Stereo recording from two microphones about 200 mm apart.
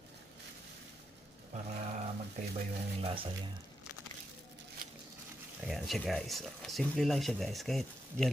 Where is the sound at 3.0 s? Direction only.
25° right (ahead or behind).